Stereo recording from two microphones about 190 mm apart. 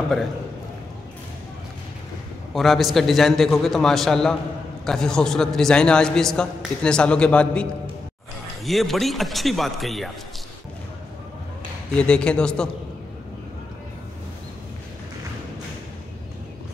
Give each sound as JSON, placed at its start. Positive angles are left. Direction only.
{"t": 2.5, "sound": "a man's voice", "side_deg": 0}
{"t": 8.6, "sound": "a man's voice", "side_deg": 0}
{"t": 12.0, "sound": "a man's voice", "side_deg": 5}